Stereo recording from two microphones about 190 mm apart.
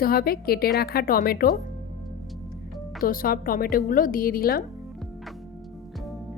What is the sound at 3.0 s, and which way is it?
A woman's voice, 50° left (ahead or behind).